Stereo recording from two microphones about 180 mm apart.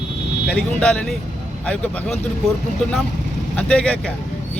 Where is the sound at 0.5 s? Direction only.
5° left (ahead or behind).